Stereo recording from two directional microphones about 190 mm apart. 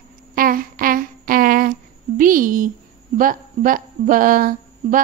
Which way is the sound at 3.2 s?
45° right (ahead or behind).